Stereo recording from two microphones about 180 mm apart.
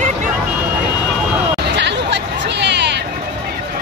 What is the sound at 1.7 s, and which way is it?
Music, 75° right (ahead or behind).